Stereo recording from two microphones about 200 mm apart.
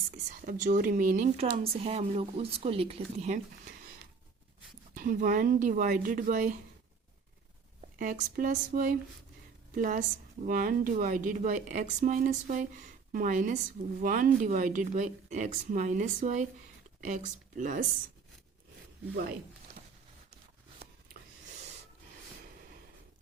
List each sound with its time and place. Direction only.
0.3 s a woman's voice: 40° right (ahead or behind)
4.9 s speech: 45° right (ahead or behind)
7.8 s a woman's voice: 40° right (ahead or behind)